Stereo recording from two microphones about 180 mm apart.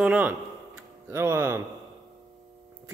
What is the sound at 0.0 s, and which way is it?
A man's voice, 10° right (ahead or behind).